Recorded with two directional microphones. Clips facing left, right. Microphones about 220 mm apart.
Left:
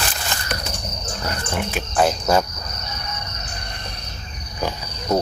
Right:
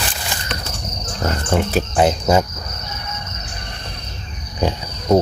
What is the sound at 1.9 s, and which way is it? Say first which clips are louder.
Cricket: right 2 dB; 20° right (ahead or behind).